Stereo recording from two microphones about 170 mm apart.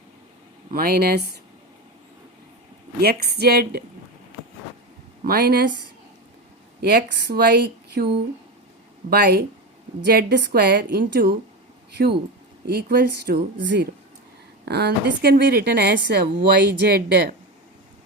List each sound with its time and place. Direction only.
0.7 s speech: 60° right (ahead or behind)
3.0 s a woman's voice: 65° right (ahead or behind)
5.2 s speech: 65° right (ahead or behind)
6.8 s a woman's voice: 75° right (ahead or behind)
12.6 s speech: 65° right (ahead or behind); by 13.8 s 90° right
14.6 s a woman's voice: 70° right (ahead or behind)